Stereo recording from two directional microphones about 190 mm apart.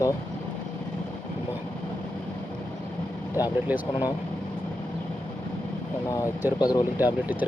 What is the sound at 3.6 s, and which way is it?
Speech, 10° right (ahead or behind).